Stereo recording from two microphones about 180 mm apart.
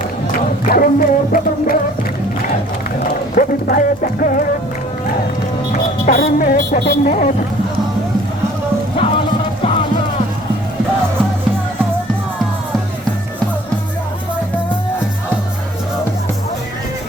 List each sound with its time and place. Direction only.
0.3 s music: 50° left (ahead or behind)
3.3 s music: 50° left (ahead or behind)
5.7 s speech: 55° left (ahead or behind)
9.0 s music: 30° left (ahead or behind)